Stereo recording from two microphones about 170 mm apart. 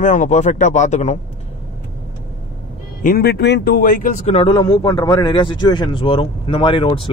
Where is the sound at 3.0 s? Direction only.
60° left (ahead or behind); by 4.4 s 45° left (ahead or behind).